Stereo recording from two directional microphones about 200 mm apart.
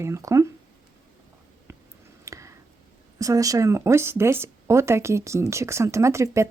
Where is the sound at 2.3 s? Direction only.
15° right (ahead or behind).